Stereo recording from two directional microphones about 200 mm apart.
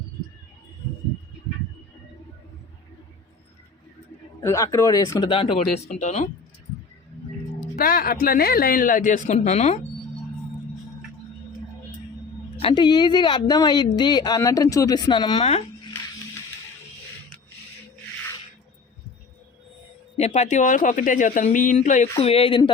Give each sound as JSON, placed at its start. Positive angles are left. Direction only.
{"t": 4.4, "sound": "speech", "side_deg": 15}
{"t": 7.8, "sound": "speech", "side_deg": 45}
{"t": 12.5, "sound": "speech", "side_deg": 25}
{"t": 20.1, "sound": "speech", "side_deg": 35}